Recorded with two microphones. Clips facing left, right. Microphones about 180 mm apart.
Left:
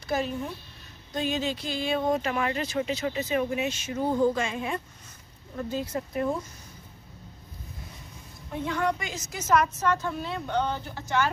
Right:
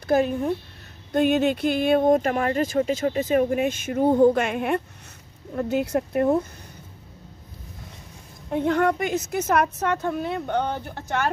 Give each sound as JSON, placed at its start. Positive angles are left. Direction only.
{"t": 0.0, "sound": "a woman's voice", "side_deg": -55}
{"t": 8.5, "sound": "a woman's voice", "side_deg": -60}